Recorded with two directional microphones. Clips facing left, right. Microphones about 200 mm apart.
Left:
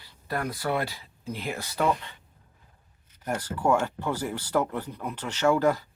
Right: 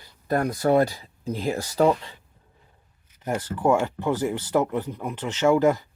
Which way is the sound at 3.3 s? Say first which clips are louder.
Right 3 dB; 20° right (ahead or behind).